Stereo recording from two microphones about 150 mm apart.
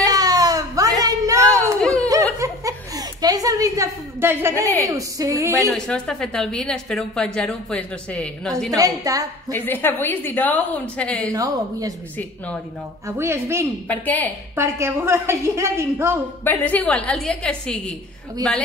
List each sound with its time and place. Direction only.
0.1 s baby cry: 25° right (ahead or behind)
1.8 s a sound: 5° left (ahead or behind)
2.4 s giggle: 25° right (ahead or behind)
4.8 s speech: 20° right (ahead or behind)
5.7 s a woman's voice: 5° left (ahead or behind)
8.7 s speech: 25° right (ahead or behind)
9.5 s a woman's voice: 15° left (ahead or behind)
11.3 s speech: 25° right (ahead or behind)
13.1 s a woman's voice: 15° right (ahead or behind)
13.8 s a woman's voice: 10° left (ahead or behind)
14.5 s a woman's voice: 15° right (ahead or behind)
16.4 s a woman's voice: 10° left (ahead or behind)